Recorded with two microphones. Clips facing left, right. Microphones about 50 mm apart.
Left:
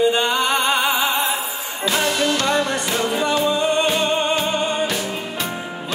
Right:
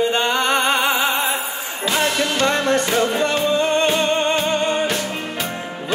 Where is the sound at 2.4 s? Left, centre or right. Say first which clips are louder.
Right 1 dB; centre.